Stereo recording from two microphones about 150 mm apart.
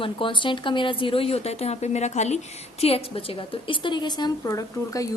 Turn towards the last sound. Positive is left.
turn(degrees=20)  # may be behind; listen again after turning